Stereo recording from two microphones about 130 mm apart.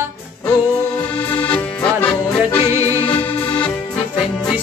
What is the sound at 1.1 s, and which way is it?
Accordion, 10° left (ahead or behind).